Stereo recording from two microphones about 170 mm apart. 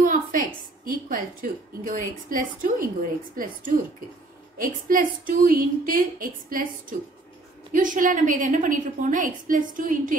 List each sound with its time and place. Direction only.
0.0 s a sound: 50° right (ahead or behind)
0.8 s a woman's voice: 55° right (ahead or behind)
4.6 s a woman's voice: 55° right (ahead or behind)